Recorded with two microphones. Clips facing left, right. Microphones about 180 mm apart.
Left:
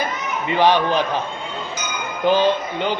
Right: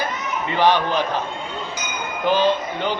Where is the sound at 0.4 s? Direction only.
15° left (ahead or behind).